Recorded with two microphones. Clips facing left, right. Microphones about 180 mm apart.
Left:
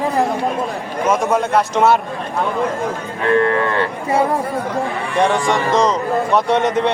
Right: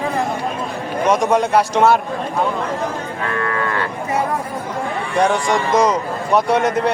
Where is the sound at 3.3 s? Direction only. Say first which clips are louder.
Left 6 dB; 30° left (ahead or behind).